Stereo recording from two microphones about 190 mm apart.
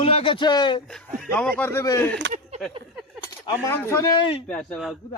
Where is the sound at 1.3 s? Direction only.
10° left (ahead or behind).